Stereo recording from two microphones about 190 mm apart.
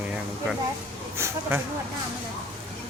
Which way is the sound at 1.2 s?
15° right (ahead or behind).